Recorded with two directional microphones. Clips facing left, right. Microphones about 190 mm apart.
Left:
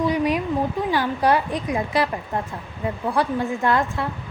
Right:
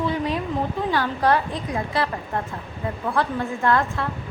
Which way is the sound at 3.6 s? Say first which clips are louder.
Right 2 dB; 15° left (ahead or behind).